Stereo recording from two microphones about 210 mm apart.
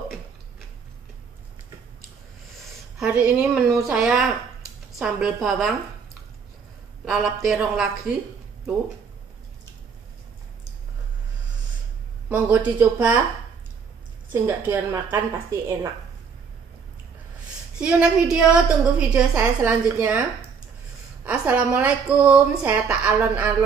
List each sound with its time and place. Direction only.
3.0 s a woman's voice: 5° right (ahead or behind)
7.1 s a woman's voice: centre (ahead or behind)
12.3 s a woman's voice: 5° right (ahead or behind)
14.3 s a woman's voice: 10° right (ahead or behind)
17.7 s a woman's voice: 5° right (ahead or behind)